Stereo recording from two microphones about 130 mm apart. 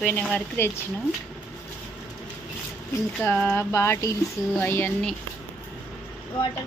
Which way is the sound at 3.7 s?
20° left (ahead or behind).